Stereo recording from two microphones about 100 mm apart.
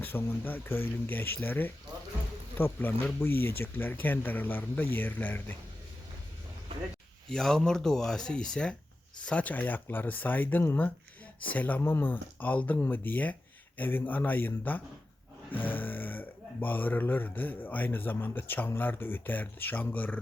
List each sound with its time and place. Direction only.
0.0 s speech: 20° left (ahead or behind)
7.3 s speech: 5° left (ahead or behind)